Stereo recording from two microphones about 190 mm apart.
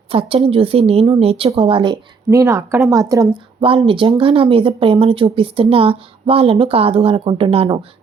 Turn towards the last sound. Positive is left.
turn(degrees=-30)  # may be behind; listen again after turning